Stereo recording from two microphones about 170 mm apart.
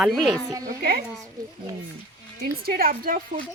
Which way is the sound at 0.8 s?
65° right (ahead or behind).